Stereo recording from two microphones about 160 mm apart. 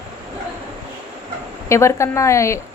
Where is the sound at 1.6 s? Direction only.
15° left (ahead or behind).